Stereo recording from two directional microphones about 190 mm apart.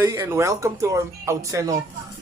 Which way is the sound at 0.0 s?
15° right (ahead or behind).